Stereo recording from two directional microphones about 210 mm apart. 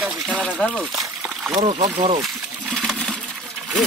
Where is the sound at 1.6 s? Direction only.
35° right (ahead or behind).